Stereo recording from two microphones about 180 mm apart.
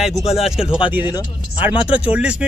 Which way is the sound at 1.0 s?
25° left (ahead or behind).